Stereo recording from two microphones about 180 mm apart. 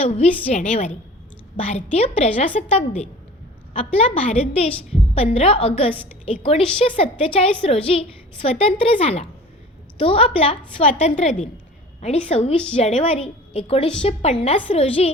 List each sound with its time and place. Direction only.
0.0 s a woman's voice: 35° left (ahead or behind)